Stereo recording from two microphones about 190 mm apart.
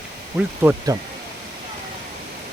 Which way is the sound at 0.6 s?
20° right (ahead or behind).